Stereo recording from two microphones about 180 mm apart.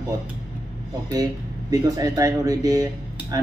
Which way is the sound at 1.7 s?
20° right (ahead or behind).